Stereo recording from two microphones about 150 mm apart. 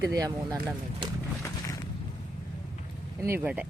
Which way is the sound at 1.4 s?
20° left (ahead or behind).